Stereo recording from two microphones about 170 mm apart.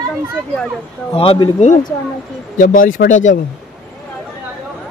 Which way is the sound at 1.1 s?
35° left (ahead or behind).